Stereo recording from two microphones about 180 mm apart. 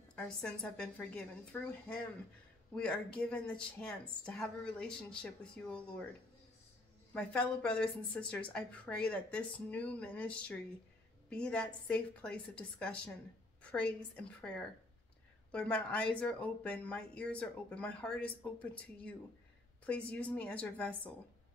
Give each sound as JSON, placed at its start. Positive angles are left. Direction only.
{"t": 0.1, "sound": "a woman's voice", "side_deg": 5}
{"t": 7.2, "sound": "a woman's voice", "side_deg": 5}